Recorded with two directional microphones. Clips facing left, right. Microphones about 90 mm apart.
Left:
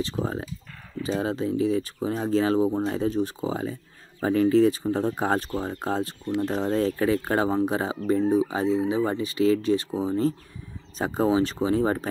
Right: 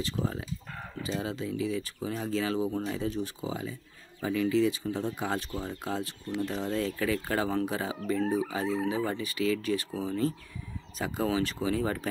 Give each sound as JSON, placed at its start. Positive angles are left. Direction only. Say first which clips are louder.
{"t": 0.0, "sound": "speech", "louder": "left 5 dB", "side_deg": 35}